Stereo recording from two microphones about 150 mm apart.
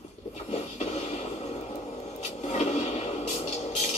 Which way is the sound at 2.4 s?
45° left (ahead or behind).